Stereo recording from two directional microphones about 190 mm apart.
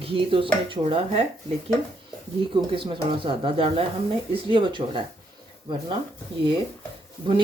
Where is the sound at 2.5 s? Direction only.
25° right (ahead or behind).